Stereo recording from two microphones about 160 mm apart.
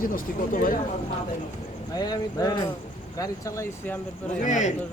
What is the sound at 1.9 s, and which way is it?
Speech, 25° left (ahead or behind).